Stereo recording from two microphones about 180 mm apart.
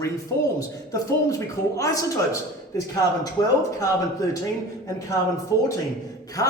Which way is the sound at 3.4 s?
20° left (ahead or behind).